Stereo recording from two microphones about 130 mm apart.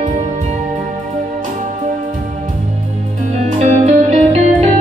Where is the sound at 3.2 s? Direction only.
65° right (ahead or behind).